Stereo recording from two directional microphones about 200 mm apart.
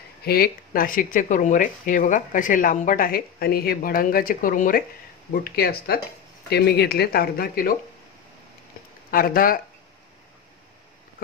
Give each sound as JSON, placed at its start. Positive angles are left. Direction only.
{"t": 0.2, "sound": "speech", "side_deg": 50}
{"t": 9.1, "sound": "speech", "side_deg": 45}